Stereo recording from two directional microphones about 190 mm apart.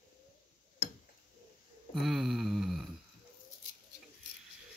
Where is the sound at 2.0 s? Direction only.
Centre (ahead or behind).